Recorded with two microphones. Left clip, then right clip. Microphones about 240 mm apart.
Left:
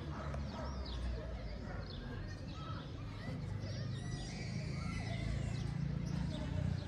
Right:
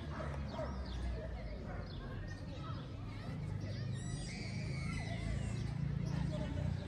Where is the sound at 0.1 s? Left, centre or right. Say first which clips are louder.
Right 2 dB; left.